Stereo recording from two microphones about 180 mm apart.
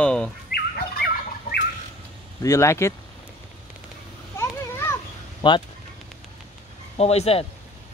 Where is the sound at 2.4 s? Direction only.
15° left (ahead or behind).